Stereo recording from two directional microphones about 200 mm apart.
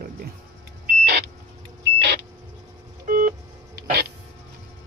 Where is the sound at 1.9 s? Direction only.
60° right (ahead or behind).